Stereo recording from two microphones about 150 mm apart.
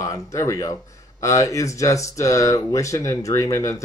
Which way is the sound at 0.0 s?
20° left (ahead or behind).